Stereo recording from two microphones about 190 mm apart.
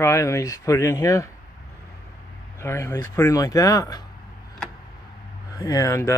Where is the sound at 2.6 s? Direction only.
15° left (ahead or behind).